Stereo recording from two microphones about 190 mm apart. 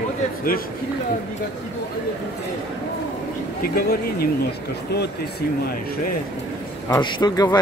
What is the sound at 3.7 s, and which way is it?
Speech, 50° left (ahead or behind).